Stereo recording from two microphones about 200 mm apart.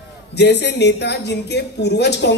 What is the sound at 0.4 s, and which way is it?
Speech, 60° left (ahead or behind).